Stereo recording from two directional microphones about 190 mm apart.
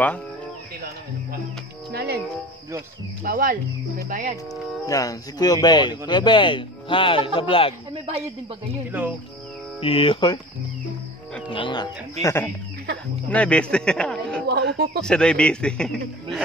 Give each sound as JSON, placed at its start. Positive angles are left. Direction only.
{"t": 1.9, "sound": "speech", "side_deg": -60}
{"t": 3.3, "sound": "speech", "side_deg": -50}
{"t": 4.8, "sound": "speech", "side_deg": 20}
{"t": 9.8, "sound": "speech", "side_deg": 30}
{"t": 11.5, "sound": "a man's voice", "side_deg": 25}
{"t": 14.5, "sound": "speech", "side_deg": -60}
{"t": 15.0, "sound": "a man's voice", "side_deg": 5}